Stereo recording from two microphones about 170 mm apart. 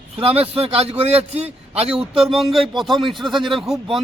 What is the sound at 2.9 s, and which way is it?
Speech, centre (ahead or behind).